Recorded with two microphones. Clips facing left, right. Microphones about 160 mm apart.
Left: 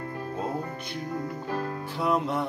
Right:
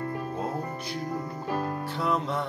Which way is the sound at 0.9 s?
40° right (ahead or behind).